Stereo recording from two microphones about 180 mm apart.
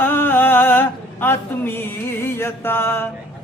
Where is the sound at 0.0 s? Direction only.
10° left (ahead or behind).